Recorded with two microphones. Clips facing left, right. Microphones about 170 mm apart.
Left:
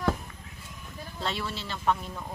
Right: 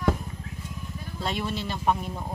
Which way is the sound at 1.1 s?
15° right (ahead or behind).